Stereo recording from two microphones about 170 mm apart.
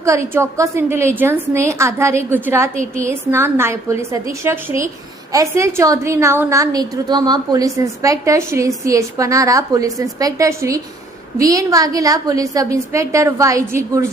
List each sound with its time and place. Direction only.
0.0 s a woman's voice: 15° right (ahead or behind)